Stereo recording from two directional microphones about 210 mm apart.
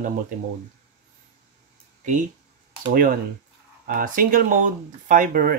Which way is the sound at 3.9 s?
40° right (ahead or behind).